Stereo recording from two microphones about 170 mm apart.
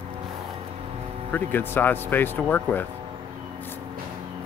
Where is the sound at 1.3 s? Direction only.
10° left (ahead or behind).